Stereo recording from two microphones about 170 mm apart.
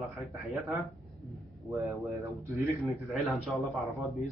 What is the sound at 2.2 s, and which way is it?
Speech, 20° right (ahead or behind).